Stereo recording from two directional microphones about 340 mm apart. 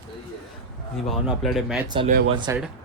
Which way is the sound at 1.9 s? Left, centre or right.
Centre.